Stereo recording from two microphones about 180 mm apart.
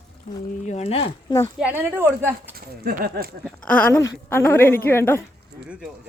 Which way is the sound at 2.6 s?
55° right (ahead or behind).